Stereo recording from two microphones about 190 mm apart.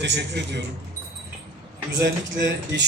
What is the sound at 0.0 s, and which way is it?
Speech, 65° right (ahead or behind).